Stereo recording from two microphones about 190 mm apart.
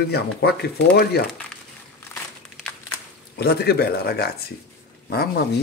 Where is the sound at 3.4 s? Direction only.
55° left (ahead or behind).